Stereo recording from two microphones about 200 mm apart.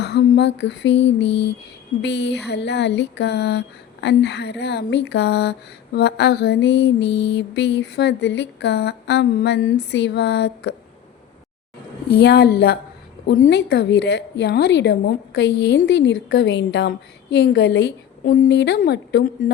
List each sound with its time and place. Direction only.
0.0 s a sound: 55° left (ahead or behind)
2.0 s speech: 60° left (ahead or behind)
12.2 s a woman's voice: 55° left (ahead or behind)